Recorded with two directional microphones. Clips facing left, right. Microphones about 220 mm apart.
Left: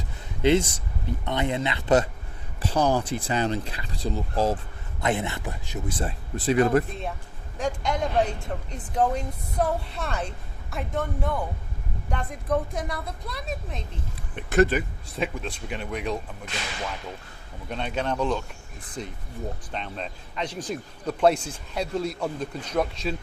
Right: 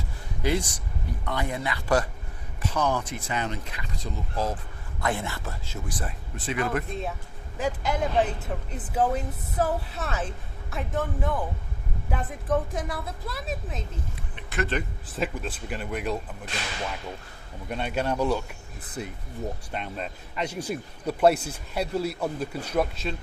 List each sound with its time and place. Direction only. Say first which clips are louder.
0.4 s speech: left 6 dB; 25° left (ahead or behind)
4.9 s speech: left 3 dB; 20° left (ahead or behind); by 6.8 s 35° left (ahead or behind)
7.6 s speech: even; 5° right (ahead or behind)
17.7 s a man's voice: right 1 dB; 5° right (ahead or behind)